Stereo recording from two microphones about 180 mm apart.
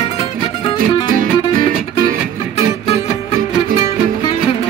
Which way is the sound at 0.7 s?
50° right (ahead or behind).